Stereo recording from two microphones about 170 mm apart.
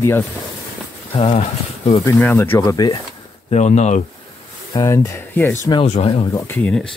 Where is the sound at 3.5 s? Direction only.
40° left (ahead or behind).